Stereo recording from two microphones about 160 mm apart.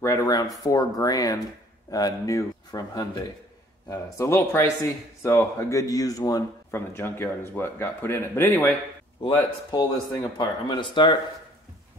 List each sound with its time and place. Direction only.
0.0 s speech: 20° left (ahead or behind)
9.2 s speech: 30° left (ahead or behind)